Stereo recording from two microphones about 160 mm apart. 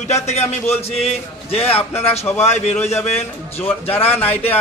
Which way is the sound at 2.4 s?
45° left (ahead or behind).